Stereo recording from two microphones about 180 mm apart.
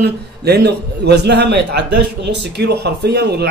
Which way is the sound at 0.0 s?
65° right (ahead or behind).